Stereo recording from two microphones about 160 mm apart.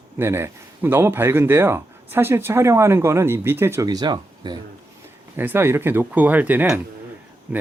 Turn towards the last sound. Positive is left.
turn(degrees=-10)  # may be behind; listen again after turning